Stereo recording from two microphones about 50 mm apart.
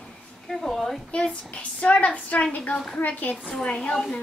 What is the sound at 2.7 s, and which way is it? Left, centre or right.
Speech, centre.